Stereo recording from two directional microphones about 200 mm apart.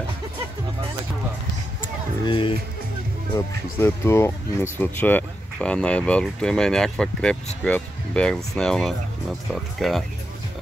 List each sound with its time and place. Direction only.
2.2 s speech: 25° left (ahead or behind)
3.3 s speech: 10° left (ahead or behind)